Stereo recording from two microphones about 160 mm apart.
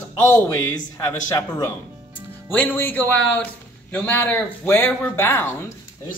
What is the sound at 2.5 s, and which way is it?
Speech, 10° left (ahead or behind).